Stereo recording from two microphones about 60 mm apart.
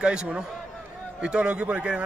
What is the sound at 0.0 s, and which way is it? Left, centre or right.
A man's voice, centre.